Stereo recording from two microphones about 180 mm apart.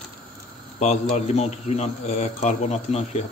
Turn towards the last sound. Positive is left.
turn(degrees=40)  # may be behind; listen again after turning